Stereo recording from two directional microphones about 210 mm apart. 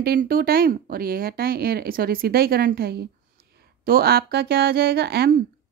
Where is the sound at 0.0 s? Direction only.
45° right (ahead or behind).